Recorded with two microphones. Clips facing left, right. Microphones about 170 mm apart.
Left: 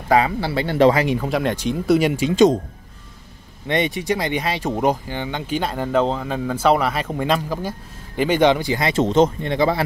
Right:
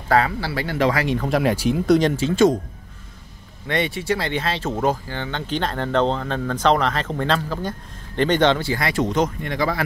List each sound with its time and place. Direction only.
0.1 s speech: 20° left (ahead or behind)
1.0 s speech: 10° left (ahead or behind)
1.3 s speech: 5° right (ahead or behind)
2.0 s speech: 10° left (ahead or behind)
3.6 s speech: 20° left (ahead or behind)